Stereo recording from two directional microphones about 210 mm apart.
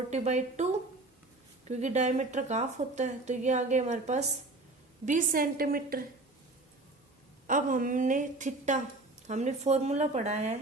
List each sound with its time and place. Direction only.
0.1 s a woman's voice: 35° right (ahead or behind)
7.4 s speech: 40° right (ahead or behind)